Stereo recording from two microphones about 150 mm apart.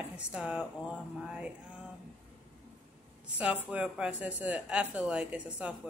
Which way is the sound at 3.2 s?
10° right (ahead or behind).